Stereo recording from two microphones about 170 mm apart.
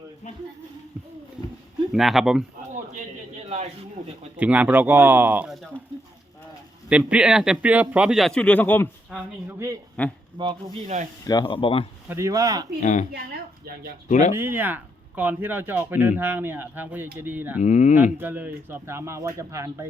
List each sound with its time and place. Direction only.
1.9 s speech: centre (ahead or behind)
4.4 s speech: 10° right (ahead or behind)
6.8 s speech: 5° right (ahead or behind); by 8.9 s 10° left (ahead or behind)
9.0 s speech: 10° right (ahead or behind)
10.0 s speech: 5° left (ahead or behind)
10.4 s speech: 30° right (ahead or behind)
11.3 s speech: 25° left (ahead or behind)
12.0 s speech: 15° right (ahead or behind)
12.8 s speech: 45° left (ahead or behind)
14.1 s speech: 45° left (ahead or behind)
14.3 s speech: 15° right (ahead or behind)
17.6 s speech: 45° left (ahead or behind)
18.2 s speech: 10° right (ahead or behind)